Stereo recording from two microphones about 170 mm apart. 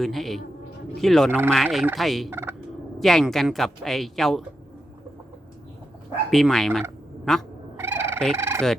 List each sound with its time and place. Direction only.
0.0 s speech: centre (ahead or behind)
2.3 s fowl: 15° right (ahead or behind)
3.0 s speech: centre (ahead or behind)
6.3 s speech: centre (ahead or behind)
7.8 s fowl: 15° right (ahead or behind)